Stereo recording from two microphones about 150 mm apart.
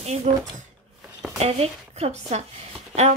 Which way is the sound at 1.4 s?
45° right (ahead or behind).